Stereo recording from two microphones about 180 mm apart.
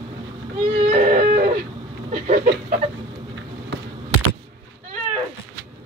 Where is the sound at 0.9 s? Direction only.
45° right (ahead or behind).